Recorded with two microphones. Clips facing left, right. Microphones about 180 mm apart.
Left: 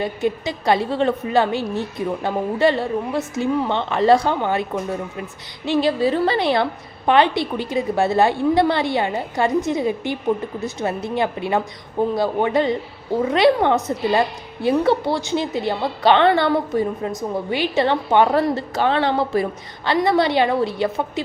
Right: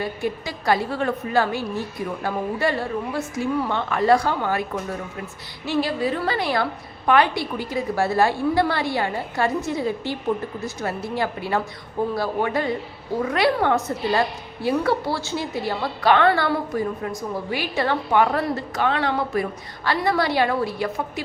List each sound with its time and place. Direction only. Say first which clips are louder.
0.0 s a woman's voice: left 4 dB; 20° left (ahead or behind)